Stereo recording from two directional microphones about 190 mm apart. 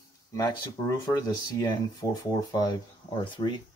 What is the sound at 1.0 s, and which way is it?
Speech, 20° left (ahead or behind).